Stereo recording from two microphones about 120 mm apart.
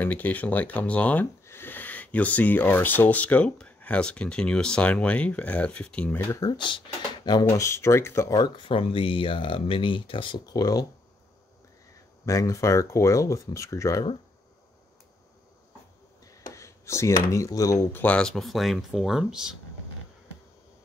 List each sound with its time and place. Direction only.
0.0 s speech: 15° left (ahead or behind)
6.4 s speech: 40° left (ahead or behind)
7.2 s speech: 30° left (ahead or behind)
8.4 s speech: 40° left (ahead or behind)
10.4 s speech: 30° left (ahead or behind)
12.3 s speech: 25° left (ahead or behind)
16.5 s speech: 25° left (ahead or behind)
17.9 s speech: 10° left (ahead or behind); by 19.5 s 5° right (ahead or behind)